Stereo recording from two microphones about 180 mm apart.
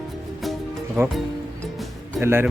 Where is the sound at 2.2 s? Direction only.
10° right (ahead or behind).